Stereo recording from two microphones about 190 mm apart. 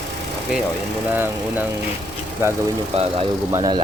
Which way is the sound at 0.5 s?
5° right (ahead or behind).